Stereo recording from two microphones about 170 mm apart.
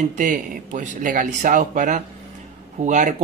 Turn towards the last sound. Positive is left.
turn(degrees=-45)  # may be behind; listen again after turning